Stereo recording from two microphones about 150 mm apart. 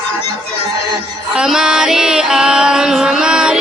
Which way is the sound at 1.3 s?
5° right (ahead or behind).